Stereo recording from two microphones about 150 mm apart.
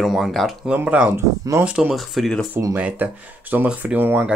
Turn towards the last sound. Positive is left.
turn(degrees=-15)  # may be behind; listen again after turning